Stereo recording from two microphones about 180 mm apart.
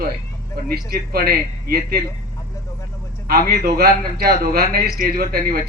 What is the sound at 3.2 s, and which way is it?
A man's voice, 60° right (ahead or behind).